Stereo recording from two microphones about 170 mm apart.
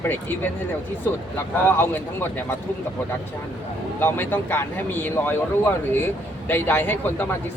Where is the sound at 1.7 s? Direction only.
10° left (ahead or behind).